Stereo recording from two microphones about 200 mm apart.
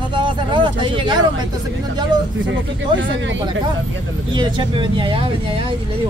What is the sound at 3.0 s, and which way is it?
Speech, 65° right (ahead or behind).